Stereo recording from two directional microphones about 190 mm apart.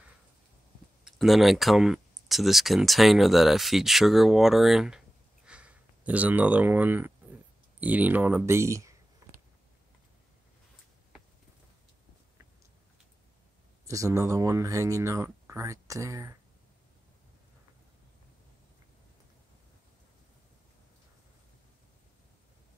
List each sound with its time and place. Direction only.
1.0 s speech: centre (ahead or behind)
13.8 s speech: 15° right (ahead or behind)